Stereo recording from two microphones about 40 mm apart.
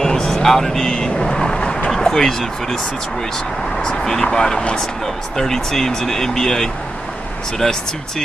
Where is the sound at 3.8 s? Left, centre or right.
Centre.